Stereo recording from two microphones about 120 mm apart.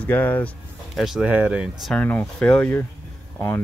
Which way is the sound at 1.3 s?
10° right (ahead or behind).